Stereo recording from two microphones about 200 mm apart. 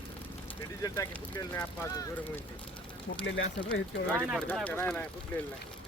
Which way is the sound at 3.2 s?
70° left (ahead or behind).